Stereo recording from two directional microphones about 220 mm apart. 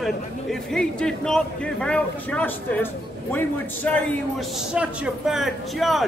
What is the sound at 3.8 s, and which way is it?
Speech, 5° left (ahead or behind).